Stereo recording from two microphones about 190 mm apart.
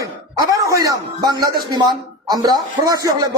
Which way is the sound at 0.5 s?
15° right (ahead or behind).